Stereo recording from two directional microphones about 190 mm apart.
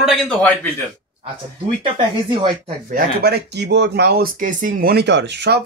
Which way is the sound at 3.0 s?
55° right (ahead or behind).